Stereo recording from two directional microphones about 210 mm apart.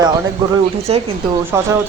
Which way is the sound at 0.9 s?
30° right (ahead or behind).